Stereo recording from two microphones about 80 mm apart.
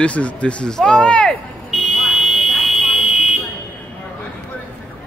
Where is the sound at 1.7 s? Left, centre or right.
Centre.